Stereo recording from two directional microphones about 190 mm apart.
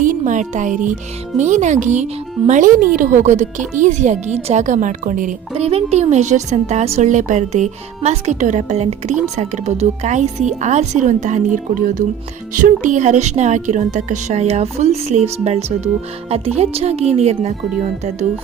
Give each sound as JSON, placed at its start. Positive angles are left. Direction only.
{"t": 0.0, "sound": "speech", "side_deg": -40}